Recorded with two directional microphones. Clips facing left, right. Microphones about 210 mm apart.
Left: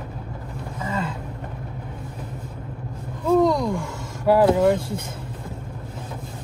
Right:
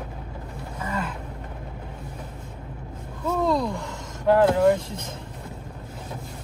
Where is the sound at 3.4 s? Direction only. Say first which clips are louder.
Left 1 dB; 10° left (ahead or behind).